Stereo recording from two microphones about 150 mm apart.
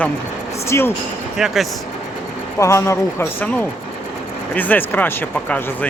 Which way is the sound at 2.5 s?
20° left (ahead or behind).